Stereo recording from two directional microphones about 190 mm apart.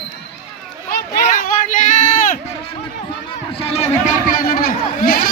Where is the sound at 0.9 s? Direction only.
45° left (ahead or behind).